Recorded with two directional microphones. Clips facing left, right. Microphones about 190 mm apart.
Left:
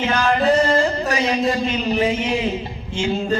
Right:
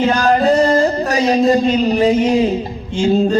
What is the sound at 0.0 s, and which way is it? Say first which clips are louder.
Music: right 5 dB; 40° right (ahead or behind).